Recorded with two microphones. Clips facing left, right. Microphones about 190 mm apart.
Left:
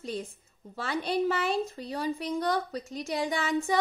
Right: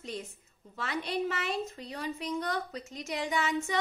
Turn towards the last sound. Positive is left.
turn(degrees=35)  # may be behind; listen again after turning